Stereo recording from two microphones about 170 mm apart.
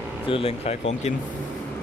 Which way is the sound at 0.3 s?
35° left (ahead or behind).